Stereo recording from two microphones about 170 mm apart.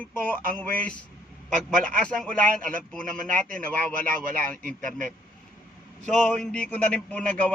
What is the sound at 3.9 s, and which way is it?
A man's voice, 55° right (ahead or behind).